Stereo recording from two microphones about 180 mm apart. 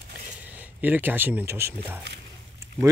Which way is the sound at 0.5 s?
10° right (ahead or behind).